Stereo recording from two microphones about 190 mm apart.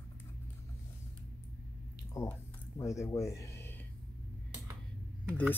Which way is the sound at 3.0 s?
15° left (ahead or behind).